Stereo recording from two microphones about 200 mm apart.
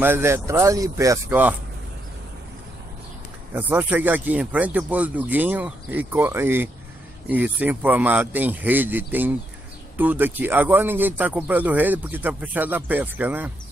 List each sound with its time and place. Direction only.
0.0 s a man's voice: 10° right (ahead or behind)
3.5 s a man's voice: 10° right (ahead or behind)